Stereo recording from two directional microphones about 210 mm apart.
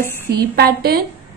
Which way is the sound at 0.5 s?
45° right (ahead or behind).